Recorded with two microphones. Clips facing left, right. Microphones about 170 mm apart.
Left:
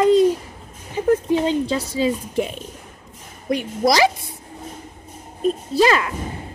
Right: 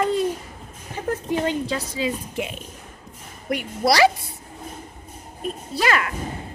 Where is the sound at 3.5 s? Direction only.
25° left (ahead or behind).